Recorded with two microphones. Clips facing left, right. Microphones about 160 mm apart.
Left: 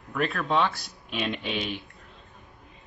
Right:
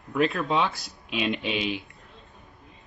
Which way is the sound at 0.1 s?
15° right (ahead or behind).